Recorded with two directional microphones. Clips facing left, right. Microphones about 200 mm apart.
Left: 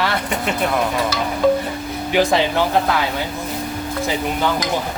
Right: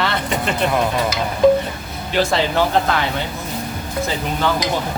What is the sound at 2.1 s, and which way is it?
Speech, 15° left (ahead or behind).